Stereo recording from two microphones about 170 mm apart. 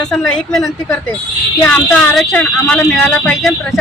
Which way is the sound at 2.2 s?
5° left (ahead or behind).